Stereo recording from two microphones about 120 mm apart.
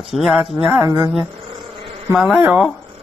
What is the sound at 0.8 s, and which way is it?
Speech, 30° right (ahead or behind).